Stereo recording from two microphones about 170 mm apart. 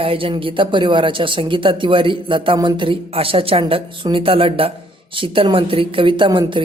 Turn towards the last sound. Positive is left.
turn(degrees=-30)  # may be behind; listen again after turning